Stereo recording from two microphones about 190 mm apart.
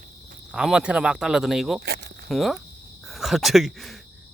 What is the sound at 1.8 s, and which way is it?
Cricket, 60° right (ahead or behind).